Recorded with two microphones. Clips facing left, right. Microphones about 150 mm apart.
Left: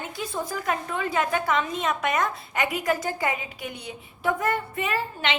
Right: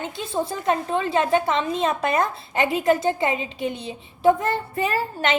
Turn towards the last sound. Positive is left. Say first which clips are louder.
# right 4 dB
turn(degrees=-35)  # may be behind; listen again after turning